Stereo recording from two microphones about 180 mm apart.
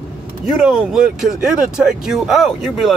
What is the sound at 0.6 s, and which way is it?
Speech, 5° right (ahead or behind).